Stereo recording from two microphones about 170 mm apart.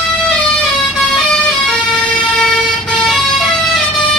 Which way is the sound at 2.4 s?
Centre (ahead or behind).